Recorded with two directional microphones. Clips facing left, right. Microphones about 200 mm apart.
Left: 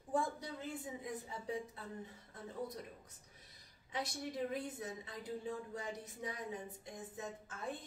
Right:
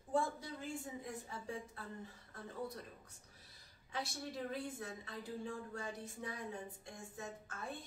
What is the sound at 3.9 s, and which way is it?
A woman's voice, 20° left (ahead or behind).